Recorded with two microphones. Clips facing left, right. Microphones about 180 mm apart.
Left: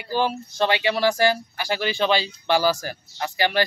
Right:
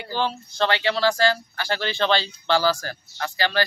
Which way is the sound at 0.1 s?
10° left (ahead or behind).